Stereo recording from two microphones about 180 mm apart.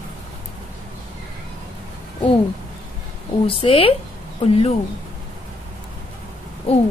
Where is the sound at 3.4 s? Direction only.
30° left (ahead or behind).